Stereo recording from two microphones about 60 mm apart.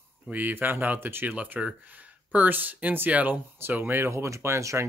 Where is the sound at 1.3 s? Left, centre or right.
Right.